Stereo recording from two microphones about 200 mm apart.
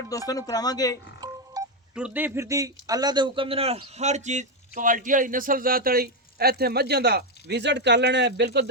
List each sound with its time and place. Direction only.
0.3 s speech: 20° left (ahead or behind)
1.6 s telephone dialing: 20° right (ahead or behind)
2.0 s speech: 5° right (ahead or behind); by 8.7 s 60° right (ahead or behind)